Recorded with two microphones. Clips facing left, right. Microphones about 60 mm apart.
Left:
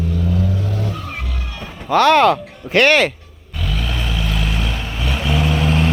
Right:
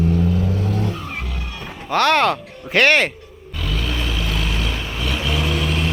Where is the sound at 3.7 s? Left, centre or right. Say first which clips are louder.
Even; centre.